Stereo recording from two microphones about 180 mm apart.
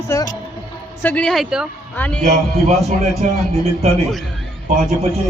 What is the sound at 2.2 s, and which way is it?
Speech, 40° right (ahead or behind).